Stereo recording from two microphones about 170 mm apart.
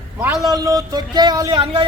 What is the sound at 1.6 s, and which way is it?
Speech, 30° right (ahead or behind).